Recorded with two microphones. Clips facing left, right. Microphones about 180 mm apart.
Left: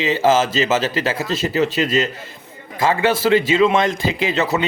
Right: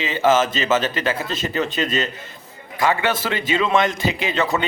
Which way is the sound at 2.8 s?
35° left (ahead or behind).